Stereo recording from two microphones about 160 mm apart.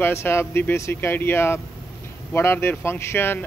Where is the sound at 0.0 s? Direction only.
15° left (ahead or behind).